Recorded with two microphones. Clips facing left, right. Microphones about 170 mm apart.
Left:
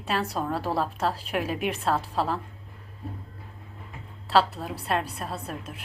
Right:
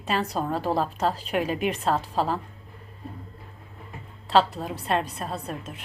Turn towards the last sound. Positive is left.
turn(degrees=5)  # may be behind; listen again after turning